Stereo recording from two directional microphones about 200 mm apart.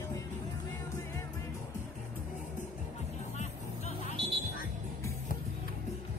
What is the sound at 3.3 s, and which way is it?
Music, 35° left (ahead or behind).